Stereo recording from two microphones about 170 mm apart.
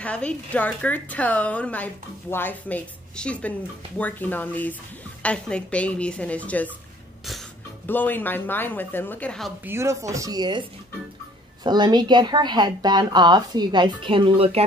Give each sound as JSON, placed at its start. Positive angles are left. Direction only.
{"t": 0.0, "sound": "a woman's voice", "side_deg": 5}
{"t": 7.8, "sound": "a woman's voice", "side_deg": 10}
{"t": 9.7, "sound": "speech", "side_deg": -15}
{"t": 11.6, "sound": "a woman's voice", "side_deg": -25}